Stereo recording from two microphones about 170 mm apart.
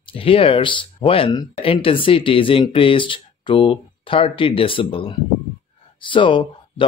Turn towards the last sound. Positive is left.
turn(degrees=30)  # may be behind; listen again after turning